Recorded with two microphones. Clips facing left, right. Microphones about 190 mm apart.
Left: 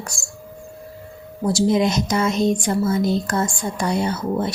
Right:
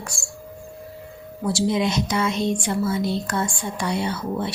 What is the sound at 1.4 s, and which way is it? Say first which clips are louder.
A woman's voice: left 4 dB; 45° left (ahead or behind).